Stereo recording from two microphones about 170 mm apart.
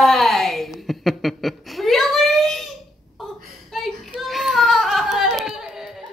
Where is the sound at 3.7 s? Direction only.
Centre (ahead or behind).